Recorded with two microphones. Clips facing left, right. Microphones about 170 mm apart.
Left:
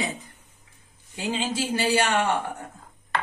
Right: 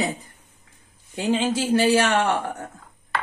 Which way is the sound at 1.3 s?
60° right (ahead or behind).